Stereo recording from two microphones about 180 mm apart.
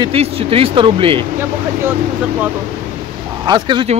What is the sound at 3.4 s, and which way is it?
Speech, 25° right (ahead or behind).